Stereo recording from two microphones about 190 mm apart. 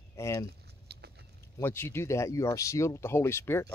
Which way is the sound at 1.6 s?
10° left (ahead or behind).